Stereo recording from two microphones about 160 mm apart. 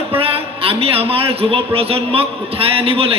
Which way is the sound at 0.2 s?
35° right (ahead or behind).